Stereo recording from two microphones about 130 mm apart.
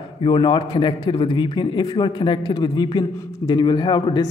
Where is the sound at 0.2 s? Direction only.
40° left (ahead or behind).